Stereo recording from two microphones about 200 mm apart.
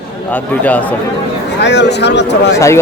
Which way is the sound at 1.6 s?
60° left (ahead or behind).